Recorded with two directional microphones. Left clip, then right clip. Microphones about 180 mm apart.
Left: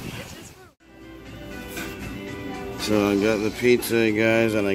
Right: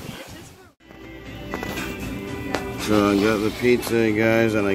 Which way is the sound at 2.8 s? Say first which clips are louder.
Right 2 dB; 5° left (ahead or behind).